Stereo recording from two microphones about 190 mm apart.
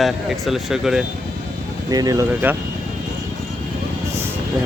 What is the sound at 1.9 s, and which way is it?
Speech, 20° right (ahead or behind).